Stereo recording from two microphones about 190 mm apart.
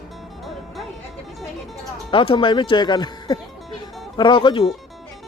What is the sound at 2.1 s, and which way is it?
Speech, 25° left (ahead or behind).